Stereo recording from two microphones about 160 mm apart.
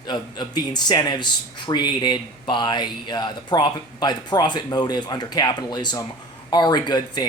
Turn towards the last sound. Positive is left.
turn(degrees=25)  # may be behind; listen again after turning